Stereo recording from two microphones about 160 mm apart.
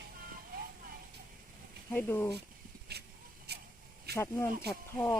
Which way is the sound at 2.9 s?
90° right.